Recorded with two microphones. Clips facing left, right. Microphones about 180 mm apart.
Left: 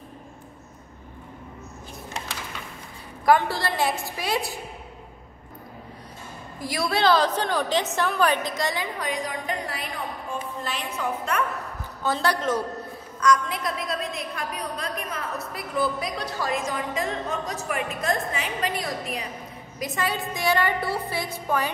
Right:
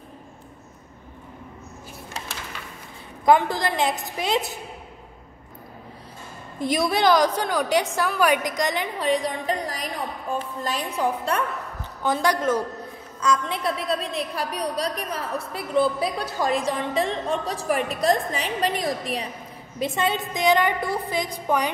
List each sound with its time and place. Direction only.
3.3 s a woman's voice: 15° right (ahead or behind)
6.6 s a woman's voice: 20° right (ahead or behind)
8.9 s a woman's voice: 30° right (ahead or behind)
12.0 s a woman's voice: 15° right (ahead or behind)
13.2 s a woman's voice: 25° right (ahead or behind)